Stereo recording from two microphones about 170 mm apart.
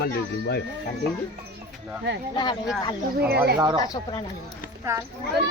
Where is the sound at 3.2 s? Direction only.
70° right (ahead or behind).